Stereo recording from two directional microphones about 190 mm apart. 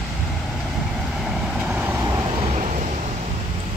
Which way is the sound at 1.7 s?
10° right (ahead or behind).